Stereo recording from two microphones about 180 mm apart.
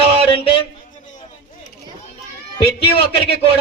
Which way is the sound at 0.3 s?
30° left (ahead or behind).